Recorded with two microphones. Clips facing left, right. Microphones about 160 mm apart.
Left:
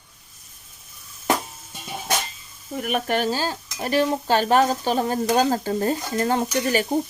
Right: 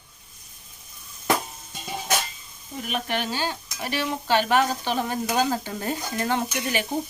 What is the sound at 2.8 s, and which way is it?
Stir, 45° left (ahead or behind).